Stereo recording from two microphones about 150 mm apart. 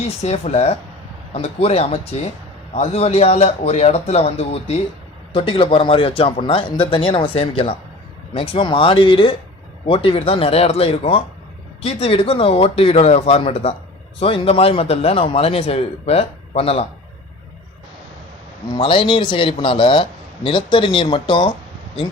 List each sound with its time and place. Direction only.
0.2 s a man's voice: 45° left (ahead or behind)
18.7 s a man's voice: 35° left (ahead or behind)